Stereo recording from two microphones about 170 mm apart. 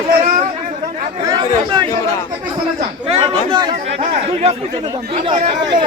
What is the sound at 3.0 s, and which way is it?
Speech, 35° right (ahead or behind).